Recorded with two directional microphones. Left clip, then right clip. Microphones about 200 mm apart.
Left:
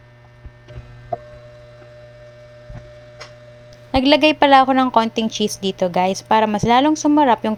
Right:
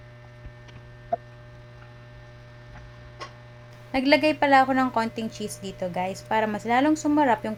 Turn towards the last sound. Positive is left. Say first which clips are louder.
# left 7 dB
turn(degrees=40)  # may be behind; listen again after turning